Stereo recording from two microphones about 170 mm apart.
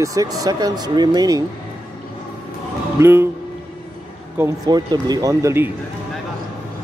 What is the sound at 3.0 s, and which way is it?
Speech, 15° right (ahead or behind).